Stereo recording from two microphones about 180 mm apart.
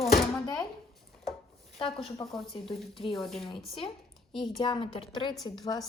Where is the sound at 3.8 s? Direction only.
30° left (ahead or behind).